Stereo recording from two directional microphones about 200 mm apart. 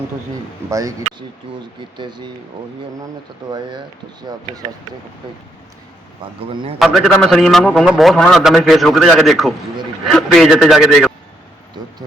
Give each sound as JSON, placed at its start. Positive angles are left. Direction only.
{"t": 0.7, "sound": "speech", "side_deg": -15}
{"t": 2.0, "sound": "a man's voice", "side_deg": -20}
{"t": 3.5, "sound": "a man's voice", "side_deg": -25}
{"t": 6.4, "sound": "a man's voice", "side_deg": -25}
{"t": 6.7, "sound": "a man's voice", "side_deg": 0}